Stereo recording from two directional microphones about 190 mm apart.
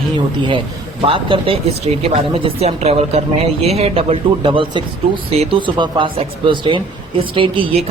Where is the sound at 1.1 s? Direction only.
30° right (ahead or behind).